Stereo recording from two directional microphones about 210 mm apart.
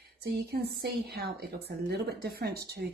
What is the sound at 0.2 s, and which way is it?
A woman's voice, 50° right (ahead or behind).